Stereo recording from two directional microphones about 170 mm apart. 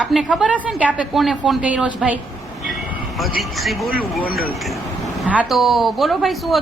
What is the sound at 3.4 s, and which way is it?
Speech, centre (ahead or behind).